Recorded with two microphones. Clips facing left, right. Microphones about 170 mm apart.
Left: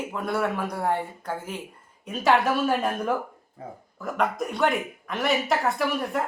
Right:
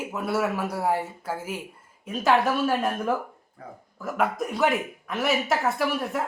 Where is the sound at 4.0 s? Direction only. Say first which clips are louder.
Even; 5° right (ahead or behind).